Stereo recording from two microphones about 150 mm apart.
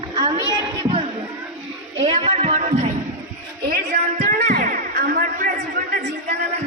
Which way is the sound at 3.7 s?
90° right.